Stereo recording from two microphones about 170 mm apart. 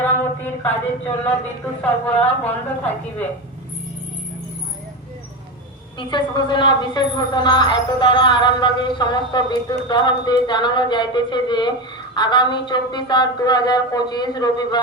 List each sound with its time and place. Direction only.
0.0 s a sound: 10° left (ahead or behind)
1.8 s a woman's voice: 10° left (ahead or behind)
6.0 s a woman's voice: 25° left (ahead or behind)